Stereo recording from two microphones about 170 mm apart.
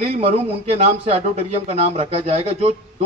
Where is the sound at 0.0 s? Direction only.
40° right (ahead or behind).